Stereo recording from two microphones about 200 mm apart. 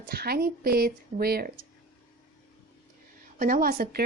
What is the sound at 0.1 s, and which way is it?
A woman's voice, 50° right (ahead or behind).